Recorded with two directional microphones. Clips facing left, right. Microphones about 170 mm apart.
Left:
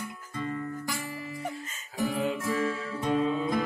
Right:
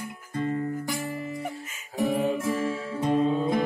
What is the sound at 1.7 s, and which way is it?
Music, centre (ahead or behind).